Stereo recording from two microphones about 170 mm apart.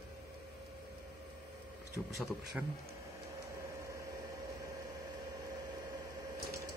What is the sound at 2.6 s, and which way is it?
Speech, 5° right (ahead or behind).